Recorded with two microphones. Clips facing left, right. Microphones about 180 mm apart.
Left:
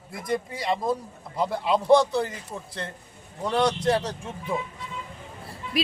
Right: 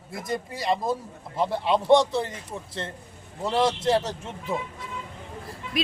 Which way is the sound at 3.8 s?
Centre (ahead or behind).